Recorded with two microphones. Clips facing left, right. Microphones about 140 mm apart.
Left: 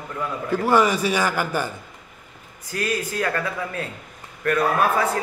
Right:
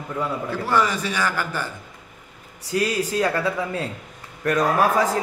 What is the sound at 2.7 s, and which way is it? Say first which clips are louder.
A man's voice: right 3 dB; 20° right (ahead or behind).